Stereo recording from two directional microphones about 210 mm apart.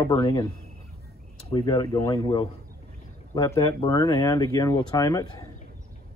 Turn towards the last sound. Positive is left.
turn(degrees=15)  # may be behind; listen again after turning